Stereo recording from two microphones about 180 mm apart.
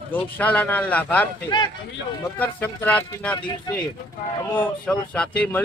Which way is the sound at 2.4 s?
10° left (ahead or behind).